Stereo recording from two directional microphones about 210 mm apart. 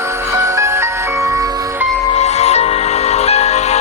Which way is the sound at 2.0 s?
30° left (ahead or behind).